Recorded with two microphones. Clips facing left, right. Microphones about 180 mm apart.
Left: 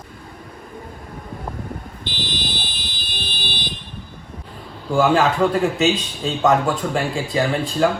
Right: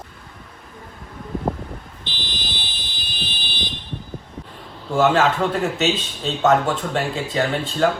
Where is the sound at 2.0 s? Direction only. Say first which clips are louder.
Left 7 dB; 50° left (ahead or behind).